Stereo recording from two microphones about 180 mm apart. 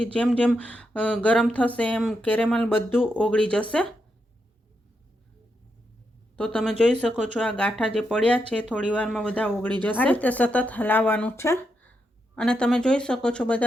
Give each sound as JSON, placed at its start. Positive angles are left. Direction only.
{"t": 0.1, "sound": "speech", "side_deg": 5}
{"t": 6.3, "sound": "speech", "side_deg": 5}